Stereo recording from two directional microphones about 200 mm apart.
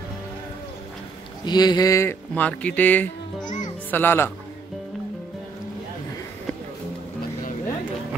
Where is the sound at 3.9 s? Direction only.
10° left (ahead or behind).